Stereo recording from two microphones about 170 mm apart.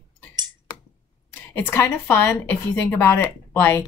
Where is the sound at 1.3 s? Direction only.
10° left (ahead or behind).